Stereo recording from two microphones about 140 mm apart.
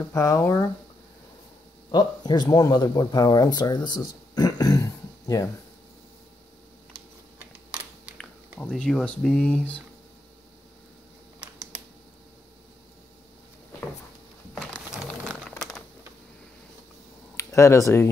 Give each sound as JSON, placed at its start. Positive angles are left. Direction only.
{"t": 0.1, "sound": "speech", "side_deg": 20}
{"t": 1.9, "sound": "speech", "side_deg": 30}
{"t": 8.2, "sound": "speech", "side_deg": 5}
{"t": 17.4, "sound": "speech", "side_deg": 20}